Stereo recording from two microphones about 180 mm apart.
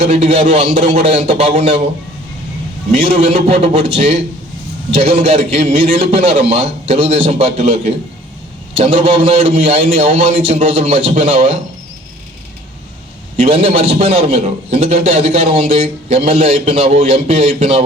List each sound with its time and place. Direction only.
0.0 s a man's voice: 35° right (ahead or behind)
2.9 s a man's voice: 35° right (ahead or behind)
13.4 s a man's voice: 35° right (ahead or behind)